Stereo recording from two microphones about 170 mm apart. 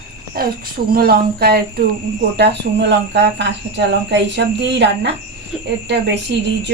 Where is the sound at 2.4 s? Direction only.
85° right.